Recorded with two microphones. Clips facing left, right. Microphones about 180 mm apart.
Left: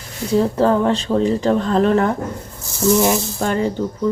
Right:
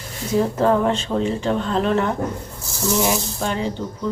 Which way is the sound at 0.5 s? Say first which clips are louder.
Left 2 dB; 35° left (ahead or behind).